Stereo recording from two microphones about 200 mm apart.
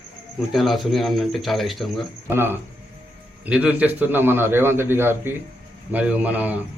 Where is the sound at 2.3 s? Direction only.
10° right (ahead or behind).